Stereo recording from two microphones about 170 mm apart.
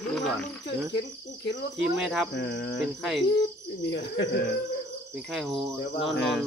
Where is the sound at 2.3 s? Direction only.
90° left.